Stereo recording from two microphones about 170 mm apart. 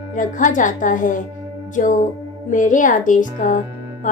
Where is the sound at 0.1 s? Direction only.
50° left (ahead or behind).